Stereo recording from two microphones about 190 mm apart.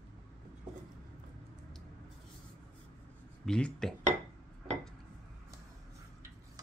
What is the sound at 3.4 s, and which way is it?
Speech, 5° left (ahead or behind).